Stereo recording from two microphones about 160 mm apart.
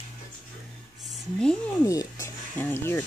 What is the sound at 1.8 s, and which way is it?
Speech, 20° left (ahead or behind).